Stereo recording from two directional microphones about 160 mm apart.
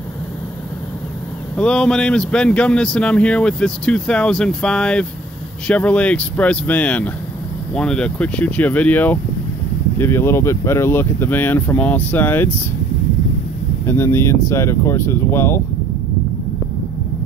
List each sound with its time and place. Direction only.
1.6 s speech: 5° left (ahead or behind)
13.8 s speech: 15° left (ahead or behind)